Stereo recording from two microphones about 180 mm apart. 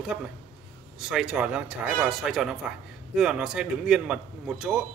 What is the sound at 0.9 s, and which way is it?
Speech, centre (ahead or behind).